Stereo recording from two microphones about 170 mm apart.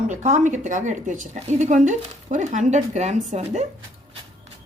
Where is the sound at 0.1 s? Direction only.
45° right (ahead or behind).